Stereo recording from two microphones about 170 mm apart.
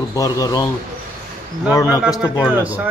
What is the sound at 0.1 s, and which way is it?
Speech, 20° left (ahead or behind).